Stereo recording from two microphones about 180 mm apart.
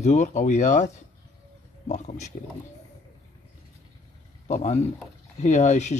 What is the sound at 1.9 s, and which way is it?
Speech, 40° left (ahead or behind).